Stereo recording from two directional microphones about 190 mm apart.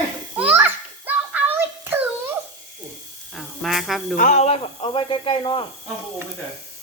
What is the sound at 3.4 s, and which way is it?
Insect, centre (ahead or behind).